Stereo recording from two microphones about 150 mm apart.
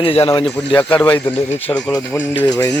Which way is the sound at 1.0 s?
10° left (ahead or behind).